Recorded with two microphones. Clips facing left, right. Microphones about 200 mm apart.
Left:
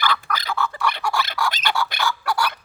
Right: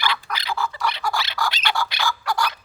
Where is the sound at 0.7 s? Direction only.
50° left (ahead or behind).